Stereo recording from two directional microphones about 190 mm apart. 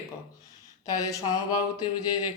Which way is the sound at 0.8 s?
20° left (ahead or behind).